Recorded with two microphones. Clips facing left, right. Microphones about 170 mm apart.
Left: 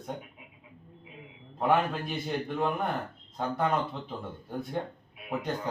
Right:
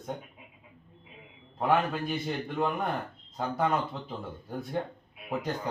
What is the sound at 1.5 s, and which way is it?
Speech, centre (ahead or behind).